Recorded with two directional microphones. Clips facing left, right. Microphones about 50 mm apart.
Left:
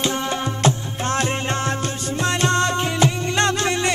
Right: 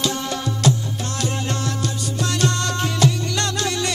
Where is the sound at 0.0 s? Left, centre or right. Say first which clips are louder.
Left 1 dB; left.